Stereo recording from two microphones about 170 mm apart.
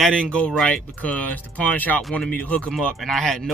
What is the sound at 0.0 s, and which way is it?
Speech, 5° left (ahead or behind).